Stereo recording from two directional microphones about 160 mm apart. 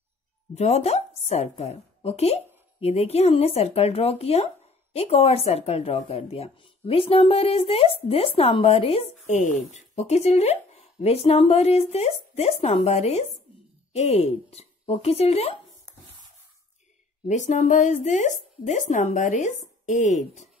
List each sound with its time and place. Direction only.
0.6 s a woman's voice: 40° left (ahead or behind)
17.3 s speech: 50° left (ahead or behind)